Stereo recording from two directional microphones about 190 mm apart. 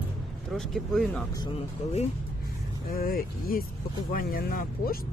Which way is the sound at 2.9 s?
50° left (ahead or behind).